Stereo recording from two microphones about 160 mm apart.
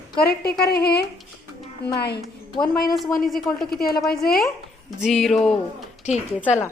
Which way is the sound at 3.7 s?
70° left (ahead or behind).